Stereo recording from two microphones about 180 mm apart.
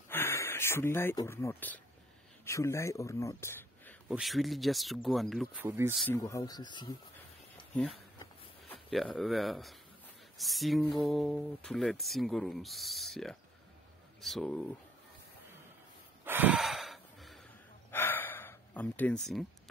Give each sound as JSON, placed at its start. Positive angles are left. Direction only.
{"t": 0.1, "sound": "speech", "side_deg": 15}
{"t": 4.1, "sound": "speech", "side_deg": 0}
{"t": 5.6, "sound": "speech", "side_deg": -15}
{"t": 6.1, "sound": "speech", "side_deg": 20}
{"t": 7.9, "sound": "a sound", "side_deg": 30}
{"t": 8.7, "sound": "speech", "side_deg": 0}
{"t": 16.3, "sound": "gasp", "side_deg": -10}
{"t": 17.9, "sound": "gasp", "side_deg": 10}